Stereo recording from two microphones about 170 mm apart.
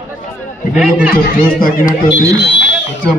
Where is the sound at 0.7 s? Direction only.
5° right (ahead or behind).